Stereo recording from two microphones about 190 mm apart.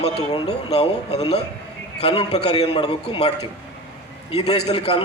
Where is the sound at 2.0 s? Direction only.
35° left (ahead or behind).